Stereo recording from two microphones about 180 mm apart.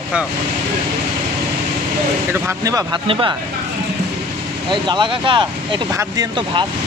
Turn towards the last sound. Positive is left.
turn(degrees=-25)  # may be behind; listen again after turning